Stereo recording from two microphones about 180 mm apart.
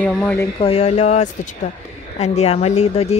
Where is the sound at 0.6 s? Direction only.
35° left (ahead or behind).